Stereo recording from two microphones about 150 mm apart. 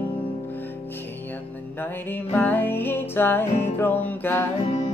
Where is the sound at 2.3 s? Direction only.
10° left (ahead or behind).